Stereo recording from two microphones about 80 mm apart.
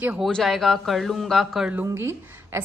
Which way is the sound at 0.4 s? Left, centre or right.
Centre.